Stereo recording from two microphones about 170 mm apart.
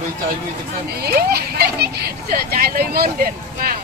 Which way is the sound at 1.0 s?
70° right (ahead or behind).